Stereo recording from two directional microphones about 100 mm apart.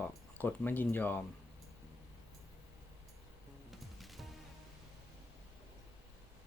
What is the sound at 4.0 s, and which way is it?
Music, centre (ahead or behind).